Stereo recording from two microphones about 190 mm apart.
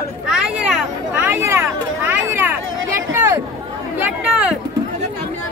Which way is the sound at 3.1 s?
15° right (ahead or behind).